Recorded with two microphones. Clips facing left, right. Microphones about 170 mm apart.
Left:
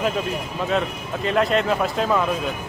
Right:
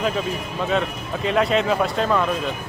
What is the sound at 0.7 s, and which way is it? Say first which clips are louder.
Speech: right 1 dB; centre (ahead or behind).